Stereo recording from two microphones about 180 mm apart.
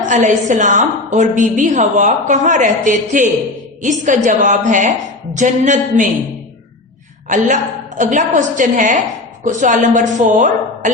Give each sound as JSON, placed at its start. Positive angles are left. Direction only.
{"t": 0.0, "sound": "a woman's voice", "side_deg": -45}
{"t": 7.3, "sound": "a woman's voice", "side_deg": -45}